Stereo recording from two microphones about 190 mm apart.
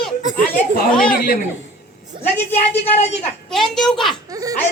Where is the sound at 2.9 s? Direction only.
35° left (ahead or behind).